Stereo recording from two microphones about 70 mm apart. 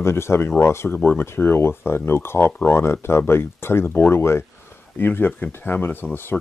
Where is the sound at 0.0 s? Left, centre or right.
Left.